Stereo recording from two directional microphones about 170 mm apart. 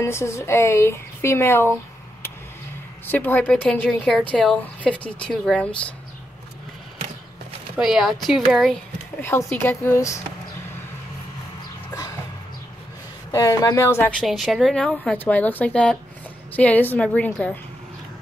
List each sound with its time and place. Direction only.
0.0 s speech: 15° left (ahead or behind)
3.1 s speech: 10° left (ahead or behind)
7.7 s a woman's voice: 5° right (ahead or behind)
9.2 s speech: 15° left (ahead or behind)
13.3 s speech: 20° left (ahead or behind)
14.1 s a woman's voice: centre (ahead or behind)